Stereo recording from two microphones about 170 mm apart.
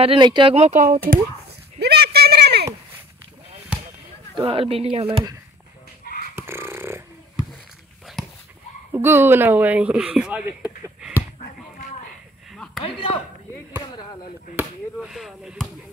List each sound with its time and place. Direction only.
0.0 s speech: 30° right (ahead or behind); by 1.2 s 50° right (ahead or behind)
1.8 s a sound: 70° right (ahead or behind)
3.7 s basketball bounce: 5° right (ahead or behind)
4.4 s speech: 30° right (ahead or behind)
6.3 s a sound: 15° right (ahead or behind)
8.2 s dog: centre (ahead or behind)
8.9 s speech: 15° right (ahead or behind)
10.6 s a sound: 5° right (ahead or behind)
12.8 s speech: 30° left (ahead or behind)
15.0 s speech: centre (ahead or behind)